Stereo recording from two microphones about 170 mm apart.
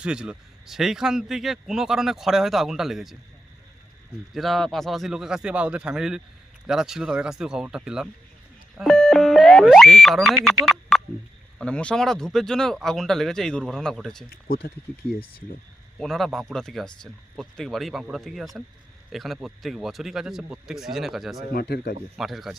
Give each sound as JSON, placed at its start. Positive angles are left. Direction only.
{"t": 0.0, "sound": "speech", "side_deg": -5}
{"t": 4.4, "sound": "speech", "side_deg": 0}
{"t": 14.3, "sound": "speech", "side_deg": 60}
{"t": 16.0, "sound": "speech", "side_deg": 0}
{"t": 21.5, "sound": "speech", "side_deg": 65}
{"t": 22.2, "sound": "speech", "side_deg": 0}